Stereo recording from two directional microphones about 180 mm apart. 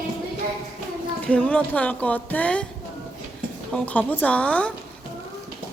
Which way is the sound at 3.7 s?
5° left (ahead or behind).